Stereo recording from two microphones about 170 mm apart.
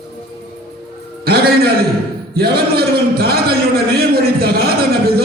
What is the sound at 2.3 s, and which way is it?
Speech, 65° right (ahead or behind).